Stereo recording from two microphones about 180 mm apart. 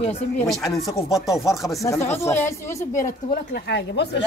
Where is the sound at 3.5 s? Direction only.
75° left (ahead or behind).